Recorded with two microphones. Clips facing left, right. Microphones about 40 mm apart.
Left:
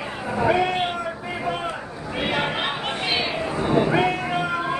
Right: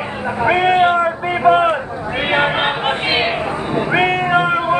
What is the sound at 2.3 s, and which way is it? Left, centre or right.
Chatter, right.